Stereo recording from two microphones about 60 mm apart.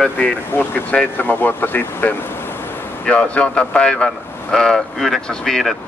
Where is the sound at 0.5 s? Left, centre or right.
Left.